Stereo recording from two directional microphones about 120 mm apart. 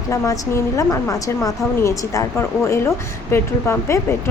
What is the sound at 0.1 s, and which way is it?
A woman's voice, 25° left (ahead or behind).